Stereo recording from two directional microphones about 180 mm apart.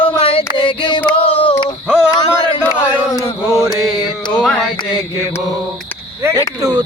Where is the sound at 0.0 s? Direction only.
30° left (ahead or behind).